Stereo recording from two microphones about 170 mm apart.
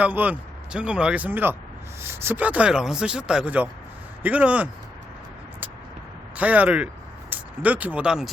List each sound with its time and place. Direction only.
0.0 s speech: 10° right (ahead or behind)
6.3 s speech: 10° right (ahead or behind)